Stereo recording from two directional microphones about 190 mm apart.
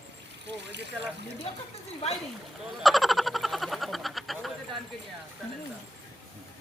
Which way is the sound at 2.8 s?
Centre (ahead or behind).